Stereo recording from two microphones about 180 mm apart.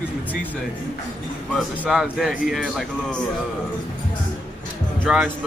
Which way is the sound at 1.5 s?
Centre (ahead or behind).